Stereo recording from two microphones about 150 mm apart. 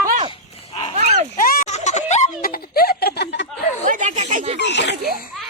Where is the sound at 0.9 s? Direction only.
50° right (ahead or behind).